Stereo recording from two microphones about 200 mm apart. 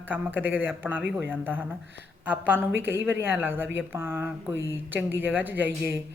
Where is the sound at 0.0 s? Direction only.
10° right (ahead or behind).